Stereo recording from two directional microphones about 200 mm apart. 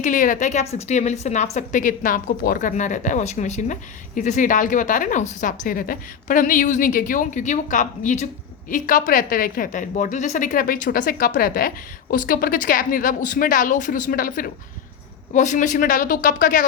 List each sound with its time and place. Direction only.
0.0 s a woman's voice: 40° left (ahead or behind)